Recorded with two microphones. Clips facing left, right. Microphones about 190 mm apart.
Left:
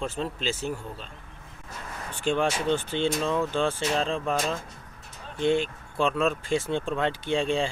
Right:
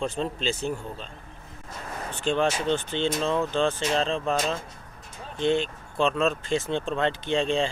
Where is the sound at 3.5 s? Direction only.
10° left (ahead or behind).